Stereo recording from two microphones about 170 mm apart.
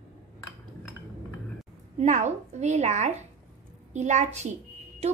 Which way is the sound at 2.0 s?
45° right (ahead or behind).